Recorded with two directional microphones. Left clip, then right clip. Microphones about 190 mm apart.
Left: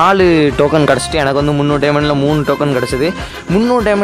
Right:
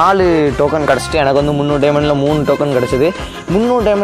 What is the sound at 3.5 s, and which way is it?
Chopping, 20° left (ahead or behind).